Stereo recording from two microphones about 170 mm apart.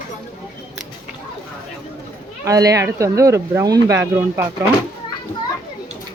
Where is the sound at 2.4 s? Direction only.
20° right (ahead or behind).